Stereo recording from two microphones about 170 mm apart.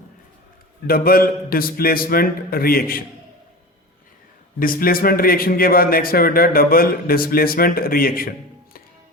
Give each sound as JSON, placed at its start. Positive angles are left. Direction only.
{"t": 0.9, "sound": "a man's voice", "side_deg": 60}
{"t": 4.6, "sound": "a man's voice", "side_deg": 55}